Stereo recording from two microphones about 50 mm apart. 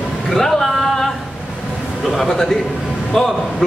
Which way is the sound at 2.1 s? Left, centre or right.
Centre.